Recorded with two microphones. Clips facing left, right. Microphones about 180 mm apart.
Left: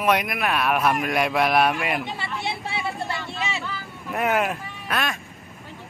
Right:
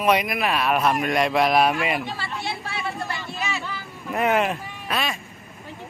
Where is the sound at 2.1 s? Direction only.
20° left (ahead or behind).